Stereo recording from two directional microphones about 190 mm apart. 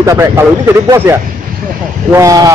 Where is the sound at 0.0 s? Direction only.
15° right (ahead or behind).